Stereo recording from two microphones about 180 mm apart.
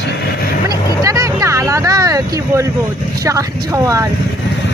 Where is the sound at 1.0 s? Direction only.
20° right (ahead or behind).